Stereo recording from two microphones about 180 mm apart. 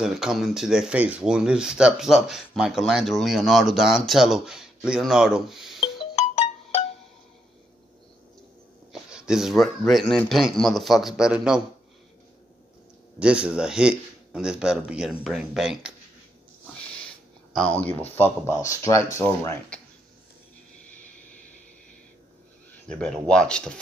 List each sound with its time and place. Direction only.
0.0 s speech: 5° right (ahead or behind)
5.8 s music: 35° left (ahead or behind)
8.9 s speech: 5° right (ahead or behind)
13.2 s speech: 5° right (ahead or behind)
16.7 s a sound: 5° left (ahead or behind)
17.6 s speech: 5° left (ahead or behind)
22.7 s speech: 5° left (ahead or behind)